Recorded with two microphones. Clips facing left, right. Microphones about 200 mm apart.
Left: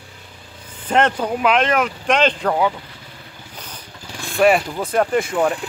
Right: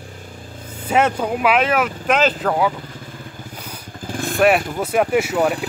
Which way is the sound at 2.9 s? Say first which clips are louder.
Right 6 dB; 45° right (ahead or behind).